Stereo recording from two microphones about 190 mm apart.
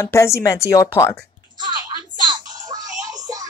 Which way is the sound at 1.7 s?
20° right (ahead or behind).